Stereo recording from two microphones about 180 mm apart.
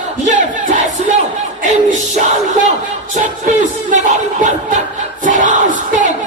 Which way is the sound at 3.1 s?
45° right (ahead or behind).